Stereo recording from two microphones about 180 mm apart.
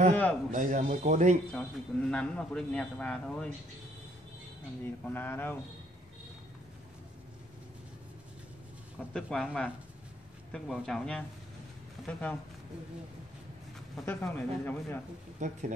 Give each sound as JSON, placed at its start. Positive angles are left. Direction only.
{"t": 0.1, "sound": "speech", "side_deg": 10}
{"t": 0.5, "sound": "speech", "side_deg": -45}
{"t": 1.5, "sound": "a man's voice", "side_deg": 5}
{"t": 5.0, "sound": "speech", "side_deg": 10}
{"t": 9.1, "sound": "a man's voice", "side_deg": 5}
{"t": 13.9, "sound": "speech", "side_deg": 10}
{"t": 15.3, "sound": "speech", "side_deg": -40}